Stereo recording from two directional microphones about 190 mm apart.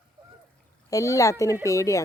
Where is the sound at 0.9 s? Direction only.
15° left (ahead or behind).